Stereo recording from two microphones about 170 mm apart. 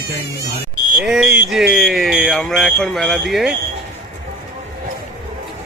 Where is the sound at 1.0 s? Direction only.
Centre (ahead or behind).